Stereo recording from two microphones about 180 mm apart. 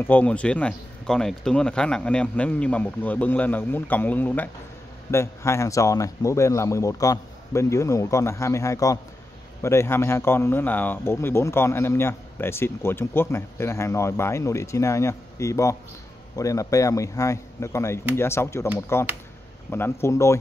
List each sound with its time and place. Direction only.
0.0 s speech: 10° left (ahead or behind)